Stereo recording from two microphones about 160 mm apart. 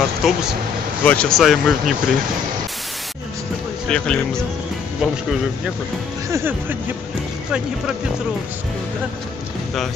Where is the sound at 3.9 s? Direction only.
5° left (ahead or behind).